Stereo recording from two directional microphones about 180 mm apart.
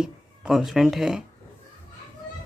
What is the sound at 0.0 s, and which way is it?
Speech, 5° right (ahead or behind).